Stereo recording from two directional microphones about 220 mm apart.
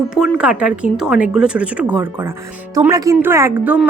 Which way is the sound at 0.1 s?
5° right (ahead or behind).